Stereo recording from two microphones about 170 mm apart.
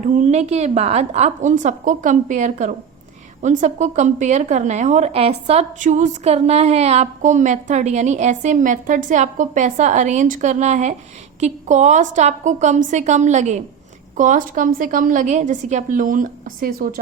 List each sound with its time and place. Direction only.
0.0 s a woman's voice: 45° right (ahead or behind)